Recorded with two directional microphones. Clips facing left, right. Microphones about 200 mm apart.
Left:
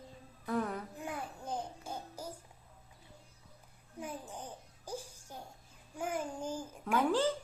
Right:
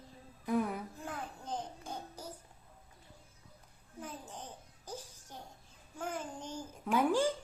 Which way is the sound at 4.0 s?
10° left (ahead or behind).